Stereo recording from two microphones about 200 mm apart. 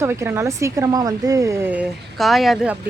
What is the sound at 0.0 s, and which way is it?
A woman's voice, 15° right (ahead or behind).